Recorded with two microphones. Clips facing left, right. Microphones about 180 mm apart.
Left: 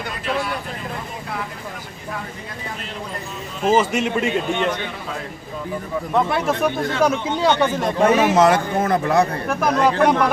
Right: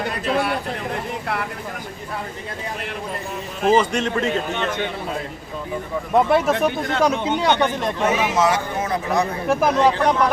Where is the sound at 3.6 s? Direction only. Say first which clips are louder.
Even; 5° left (ahead or behind).